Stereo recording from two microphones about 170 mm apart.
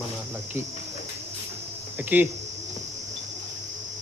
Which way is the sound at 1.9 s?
10° right (ahead or behind).